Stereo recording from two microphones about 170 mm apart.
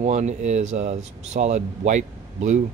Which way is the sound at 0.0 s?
40° right (ahead or behind).